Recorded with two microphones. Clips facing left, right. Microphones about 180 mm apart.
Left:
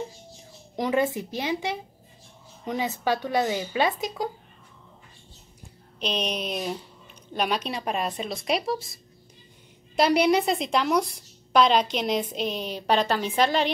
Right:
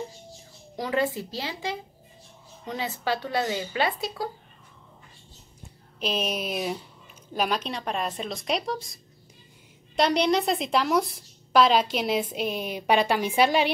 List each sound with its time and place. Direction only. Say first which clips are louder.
0.7 s speech: left 2 dB; 20° left (ahead or behind)
5.9 s a woman's voice: even; 5° right (ahead or behind)